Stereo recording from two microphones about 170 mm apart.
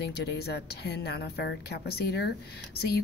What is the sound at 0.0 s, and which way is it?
A woman's voice, 75° left (ahead or behind).